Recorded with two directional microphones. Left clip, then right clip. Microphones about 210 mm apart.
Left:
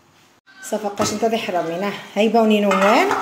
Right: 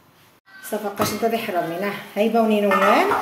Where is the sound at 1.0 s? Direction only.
20° left (ahead or behind).